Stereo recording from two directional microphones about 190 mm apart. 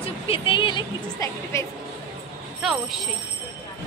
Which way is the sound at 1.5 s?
15° left (ahead or behind).